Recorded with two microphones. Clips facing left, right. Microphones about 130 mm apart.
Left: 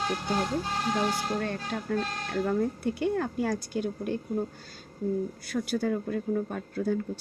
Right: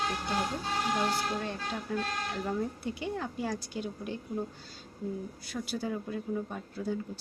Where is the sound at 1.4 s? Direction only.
55° left (ahead or behind).